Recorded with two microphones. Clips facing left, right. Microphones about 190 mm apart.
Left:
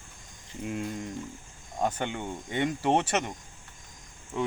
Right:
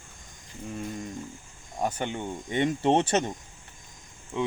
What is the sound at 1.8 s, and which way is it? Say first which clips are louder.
Speech: even; 15° right (ahead or behind).